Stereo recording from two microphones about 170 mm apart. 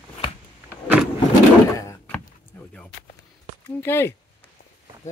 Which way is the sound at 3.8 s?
15° left (ahead or behind).